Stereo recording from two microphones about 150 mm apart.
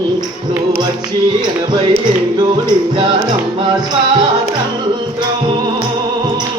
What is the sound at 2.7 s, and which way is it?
Music, 30° right (ahead or behind).